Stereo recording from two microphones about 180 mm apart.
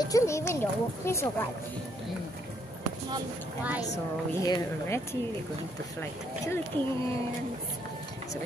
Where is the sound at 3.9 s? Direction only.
15° left (ahead or behind).